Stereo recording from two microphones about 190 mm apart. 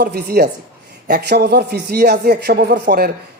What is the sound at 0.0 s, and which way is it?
A man's voice, 55° right (ahead or behind).